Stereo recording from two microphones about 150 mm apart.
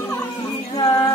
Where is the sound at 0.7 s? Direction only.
30° left (ahead or behind).